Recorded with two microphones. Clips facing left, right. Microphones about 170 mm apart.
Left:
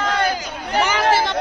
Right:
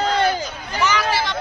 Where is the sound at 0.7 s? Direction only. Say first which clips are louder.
Left 4 dB; 55° left (ahead or behind).